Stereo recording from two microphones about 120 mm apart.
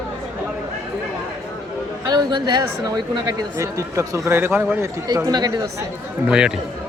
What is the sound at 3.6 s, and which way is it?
Speech, 25° right (ahead or behind).